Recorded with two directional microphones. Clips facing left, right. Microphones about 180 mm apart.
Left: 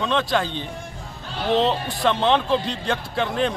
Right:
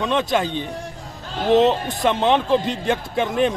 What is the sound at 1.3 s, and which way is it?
Speech, 45° right (ahead or behind).